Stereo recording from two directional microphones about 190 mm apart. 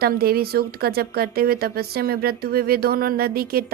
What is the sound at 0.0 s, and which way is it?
Speech, 55° right (ahead or behind).